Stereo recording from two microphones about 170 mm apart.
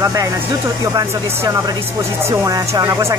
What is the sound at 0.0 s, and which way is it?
Speech, 20° right (ahead or behind).